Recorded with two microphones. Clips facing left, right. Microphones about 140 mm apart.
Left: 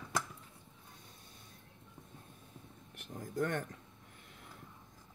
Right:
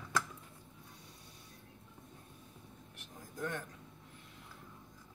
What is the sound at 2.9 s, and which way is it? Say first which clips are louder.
Vehicle: left 8 dB; 55° left (ahead or behind).